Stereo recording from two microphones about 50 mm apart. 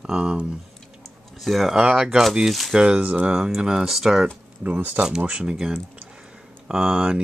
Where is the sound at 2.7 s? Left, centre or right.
Right.